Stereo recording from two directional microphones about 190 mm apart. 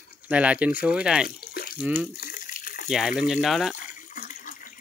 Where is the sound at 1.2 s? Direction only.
50° left (ahead or behind).